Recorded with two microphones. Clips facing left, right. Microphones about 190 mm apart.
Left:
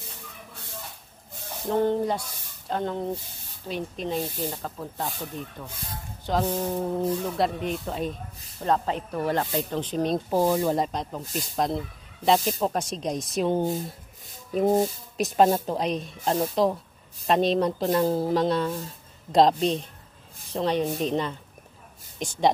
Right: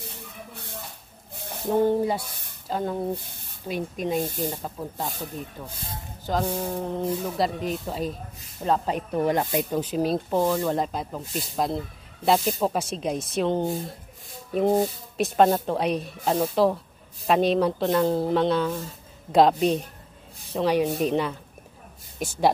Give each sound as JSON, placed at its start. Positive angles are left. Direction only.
{"t": 1.3, "sound": "a sound", "side_deg": -60}
{"t": 1.7, "sound": "speech", "side_deg": -10}
{"t": 3.2, "sound": "speech", "side_deg": -55}
{"t": 3.6, "sound": "speech", "side_deg": -10}
{"t": 4.2, "sound": "speech", "side_deg": -50}
{"t": 4.5, "sound": "speech", "side_deg": -10}
{"t": 5.7, "sound": "speech", "side_deg": -30}
{"t": 6.2, "sound": "music", "side_deg": -5}
{"t": 6.5, "sound": "a sound", "side_deg": 10}
{"t": 7.1, "sound": "speech", "side_deg": -5}
{"t": 8.8, "sound": "speech", "side_deg": -15}
{"t": 10.3, "sound": "a sound", "side_deg": 10}
{"t": 10.7, "sound": "speech", "side_deg": 0}
{"t": 14.5, "sound": "speech", "side_deg": 5}